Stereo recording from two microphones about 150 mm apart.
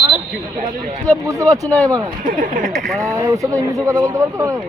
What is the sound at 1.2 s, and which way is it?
Speech, 25° right (ahead or behind).